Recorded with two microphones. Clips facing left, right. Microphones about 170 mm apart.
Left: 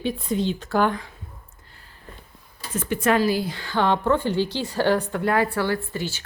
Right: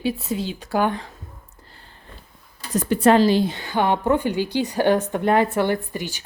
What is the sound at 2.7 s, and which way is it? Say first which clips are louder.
A woman's voice: right 5 dB; 35° right (ahead or behind).